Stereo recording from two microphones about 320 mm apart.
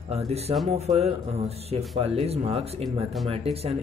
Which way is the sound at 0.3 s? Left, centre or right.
Centre.